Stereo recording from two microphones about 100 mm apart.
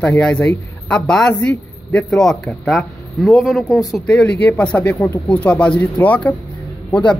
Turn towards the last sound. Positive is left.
turn(degrees=10)  # may be behind; listen again after turning